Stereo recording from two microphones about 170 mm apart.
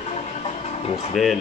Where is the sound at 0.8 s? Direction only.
35° left (ahead or behind).